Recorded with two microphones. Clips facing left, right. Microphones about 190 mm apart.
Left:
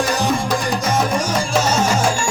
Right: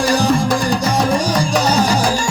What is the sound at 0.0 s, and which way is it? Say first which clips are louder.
Music: right 4 dB; 35° right (ahead or behind).